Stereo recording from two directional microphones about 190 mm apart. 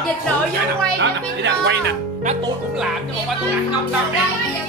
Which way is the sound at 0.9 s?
65° right (ahead or behind).